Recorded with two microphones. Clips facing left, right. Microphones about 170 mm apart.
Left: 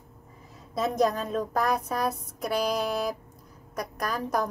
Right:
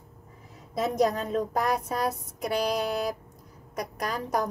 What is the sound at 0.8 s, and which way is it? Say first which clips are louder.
Child singing: even; 20° right (ahead or behind).